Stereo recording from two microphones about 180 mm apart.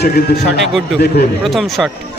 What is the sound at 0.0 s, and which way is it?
Speech, 60° left (ahead or behind).